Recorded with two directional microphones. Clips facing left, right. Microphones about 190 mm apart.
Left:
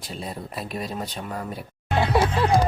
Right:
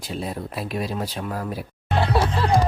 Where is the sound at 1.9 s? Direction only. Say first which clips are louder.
Left 1 dB; 15° left (ahead or behind).